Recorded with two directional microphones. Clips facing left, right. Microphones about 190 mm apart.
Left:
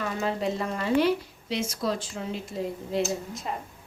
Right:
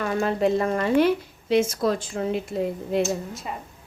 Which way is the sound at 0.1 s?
55° right (ahead or behind).